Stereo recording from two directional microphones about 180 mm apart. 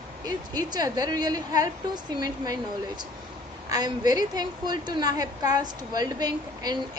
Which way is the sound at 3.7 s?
20° right (ahead or behind).